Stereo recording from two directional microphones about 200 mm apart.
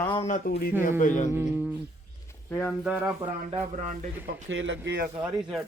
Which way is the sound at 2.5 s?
10° left (ahead or behind).